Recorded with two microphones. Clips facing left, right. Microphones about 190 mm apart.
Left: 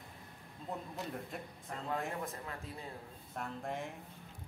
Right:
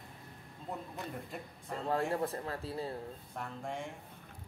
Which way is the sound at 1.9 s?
35° right (ahead or behind).